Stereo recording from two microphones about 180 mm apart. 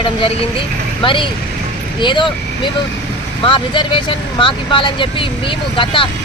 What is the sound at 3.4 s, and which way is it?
Speech, 25° left (ahead or behind).